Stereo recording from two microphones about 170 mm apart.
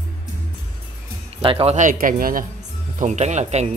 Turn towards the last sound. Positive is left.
turn(degrees=-40)  # may be behind; listen again after turning